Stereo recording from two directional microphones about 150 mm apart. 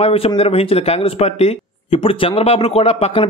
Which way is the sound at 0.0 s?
40° left (ahead or behind).